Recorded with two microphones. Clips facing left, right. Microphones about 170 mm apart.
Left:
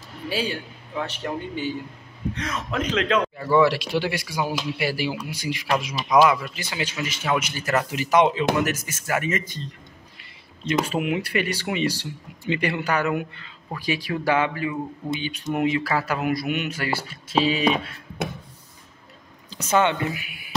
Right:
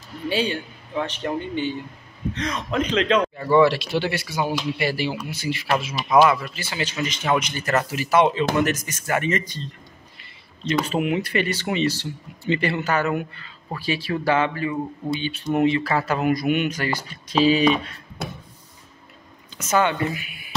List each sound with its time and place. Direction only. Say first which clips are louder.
0.3 s a man's voice: right 3 dB; 5° left (ahead or behind)
10.6 s a man's voice: right 1 dB; 10° left (ahead or behind)
19.5 s speech: even; 30° left (ahead or behind)
20.1 s a man's voice: right 1 dB; 10° left (ahead or behind)